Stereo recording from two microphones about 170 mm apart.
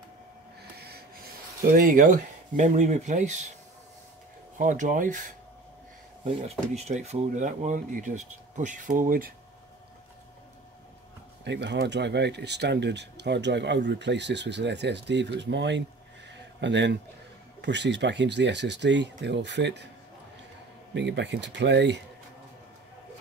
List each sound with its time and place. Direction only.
0.7 s a sound: 70° right (ahead or behind); by 3.4 s 45° right (ahead or behind)
4.6 s speech: 50° right (ahead or behind)
6.7 s speech: 40° right (ahead or behind)
11.4 s speech: 90° right
20.9 s speech: 90° right